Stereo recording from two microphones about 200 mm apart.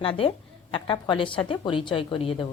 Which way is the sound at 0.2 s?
25° left (ahead or behind).